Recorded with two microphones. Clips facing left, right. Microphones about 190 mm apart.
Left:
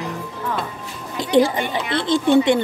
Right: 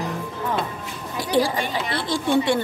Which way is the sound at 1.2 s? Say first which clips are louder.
Left 5 dB; 20° left (ahead or behind).